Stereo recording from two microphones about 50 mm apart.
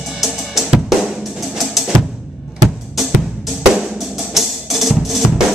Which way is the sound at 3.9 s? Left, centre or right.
Centre.